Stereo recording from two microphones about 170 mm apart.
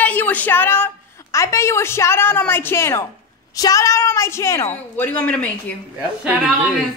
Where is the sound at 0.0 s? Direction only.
10° left (ahead or behind).